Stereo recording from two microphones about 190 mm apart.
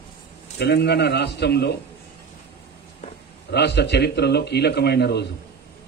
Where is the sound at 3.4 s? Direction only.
60° left (ahead or behind).